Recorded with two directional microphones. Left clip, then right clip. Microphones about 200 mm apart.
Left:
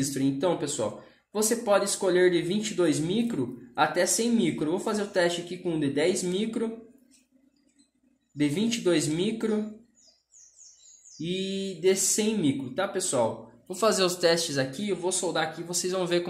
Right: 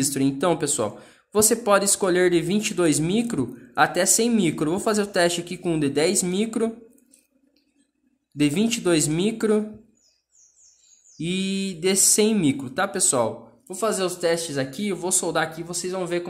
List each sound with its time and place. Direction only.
0.0 s speech: 40° right (ahead or behind)
8.4 s speech: 35° right (ahead or behind)
11.1 s speech: 35° right (ahead or behind)
13.7 s speech: 5° right (ahead or behind)
14.7 s speech: 30° right (ahead or behind)
15.7 s speech: 10° right (ahead or behind)